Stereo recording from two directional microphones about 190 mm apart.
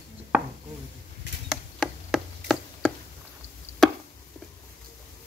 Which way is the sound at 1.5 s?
Centre (ahead or behind).